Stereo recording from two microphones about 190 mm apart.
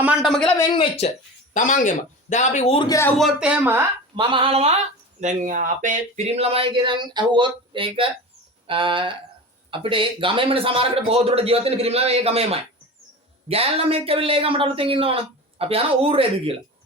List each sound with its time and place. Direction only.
0.0 s a man's voice: 5° right (ahead or behind)
0.7 s speech: 30° left (ahead or behind)
1.5 s a man's voice: 45° left (ahead or behind)
3.2 s speech: 5° right (ahead or behind)
4.1 s speech: 25° right (ahead or behind)
5.2 s a man's voice: 40° right (ahead or behind)